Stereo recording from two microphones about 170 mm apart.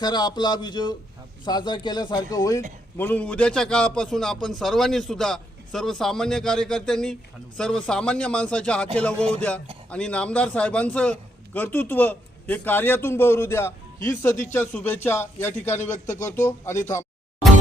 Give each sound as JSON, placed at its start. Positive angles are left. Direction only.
{"t": 0.0, "sound": "speech", "side_deg": 25}
{"t": 3.0, "sound": "a man's voice", "side_deg": 10}
{"t": 15.9, "sound": "speech", "side_deg": 45}
{"t": 16.2, "sound": "a man's voice", "side_deg": 15}